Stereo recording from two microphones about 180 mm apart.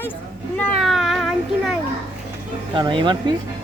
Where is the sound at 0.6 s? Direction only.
Centre (ahead or behind).